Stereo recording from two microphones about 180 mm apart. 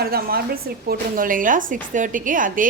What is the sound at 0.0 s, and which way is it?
A woman's voice, 55° right (ahead or behind).